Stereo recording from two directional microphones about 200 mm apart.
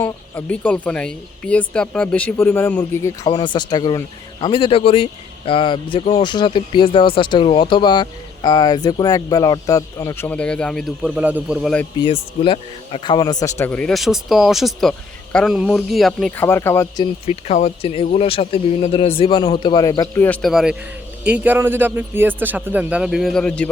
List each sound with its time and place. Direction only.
0.0 s speech: 5° left (ahead or behind)
11.9 s a man's voice: 25° left (ahead or behind)
17.2 s a man's voice: 30° left (ahead or behind); by 23.6 s 5° left (ahead or behind)